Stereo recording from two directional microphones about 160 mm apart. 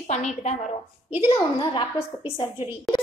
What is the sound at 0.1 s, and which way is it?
Speech, 50° left (ahead or behind).